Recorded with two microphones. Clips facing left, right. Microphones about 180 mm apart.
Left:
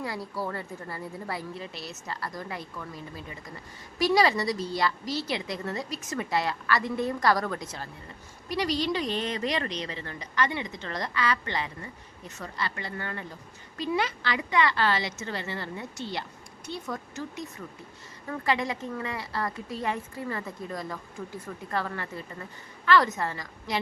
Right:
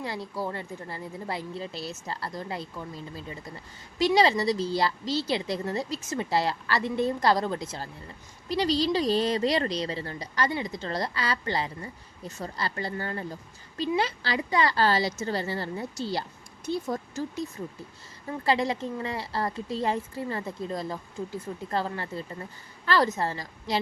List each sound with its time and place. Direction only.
0.0 s a woman's voice: 25° right (ahead or behind)